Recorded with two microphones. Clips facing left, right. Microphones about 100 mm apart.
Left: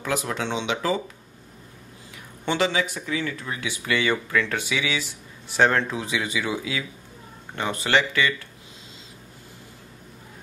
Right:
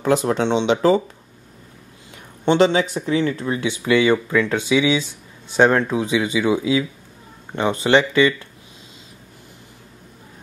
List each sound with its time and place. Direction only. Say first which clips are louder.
0.0 s speech: right 9 dB; 30° right (ahead or behind)
2.4 s speech: right 8 dB; 25° right (ahead or behind)